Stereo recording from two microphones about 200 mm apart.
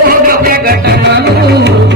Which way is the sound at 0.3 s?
45° right (ahead or behind).